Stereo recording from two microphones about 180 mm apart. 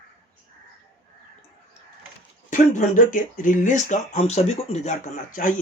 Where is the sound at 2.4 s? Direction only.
45° left (ahead or behind).